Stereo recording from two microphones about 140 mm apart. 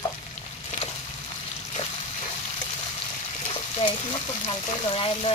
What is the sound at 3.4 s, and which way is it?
Frying, 40° left (ahead or behind).